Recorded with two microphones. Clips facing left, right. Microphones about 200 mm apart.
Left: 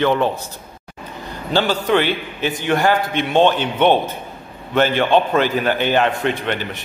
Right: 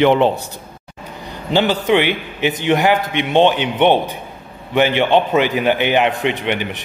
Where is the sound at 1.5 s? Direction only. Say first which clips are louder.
Right 2 dB; 15° right (ahead or behind).